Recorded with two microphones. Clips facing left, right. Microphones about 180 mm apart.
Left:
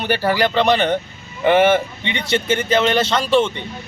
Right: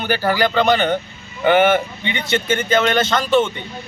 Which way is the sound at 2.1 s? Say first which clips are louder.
Left 1 dB; 30° left (ahead or behind).